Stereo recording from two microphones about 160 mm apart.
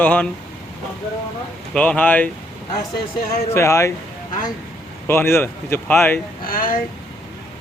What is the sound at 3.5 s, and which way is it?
Speech, 20° left (ahead or behind).